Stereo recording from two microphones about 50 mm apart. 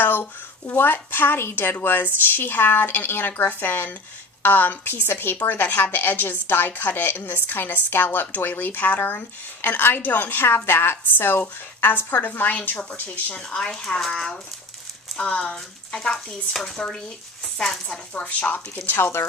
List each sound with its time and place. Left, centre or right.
0.0 s a sound: left
0.7 s a woman's voice: left
13.3 s speech: centre
14.1 s speech: centre
15.2 s speech: left
17.4 s a sound: centre
17.8 s speech: left
18.3 s speech: left
19.2 s speech: left